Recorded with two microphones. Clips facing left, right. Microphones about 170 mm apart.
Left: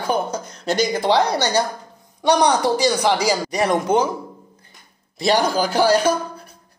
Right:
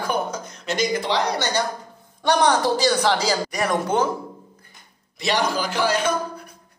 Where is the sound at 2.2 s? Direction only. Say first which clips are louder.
Left 2 dB; 15° left (ahead or behind).